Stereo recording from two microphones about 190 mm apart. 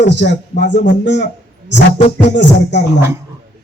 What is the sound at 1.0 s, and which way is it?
Music, 65° left (ahead or behind).